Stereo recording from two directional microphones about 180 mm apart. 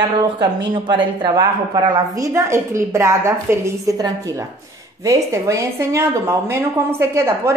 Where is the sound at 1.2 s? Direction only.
20° right (ahead or behind).